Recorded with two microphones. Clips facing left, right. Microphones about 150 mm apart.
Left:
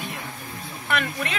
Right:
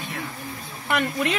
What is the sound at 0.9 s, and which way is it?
Speech, 15° right (ahead or behind).